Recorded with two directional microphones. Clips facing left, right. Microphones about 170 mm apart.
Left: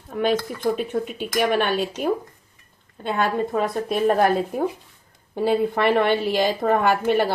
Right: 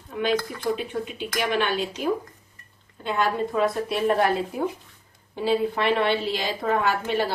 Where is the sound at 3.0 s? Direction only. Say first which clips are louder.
Left 2 dB; 50° left (ahead or behind).